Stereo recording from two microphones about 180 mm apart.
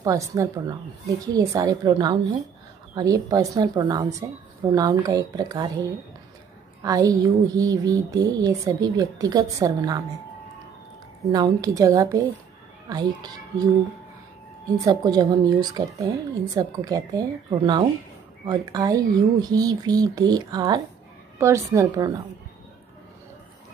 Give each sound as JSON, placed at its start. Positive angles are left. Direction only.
{"t": 0.0, "sound": "speech", "side_deg": -20}
{"t": 6.8, "sound": "speech", "side_deg": -20}
{"t": 11.2, "sound": "speech", "side_deg": -20}
{"t": 14.9, "sound": "a woman's voice", "side_deg": -20}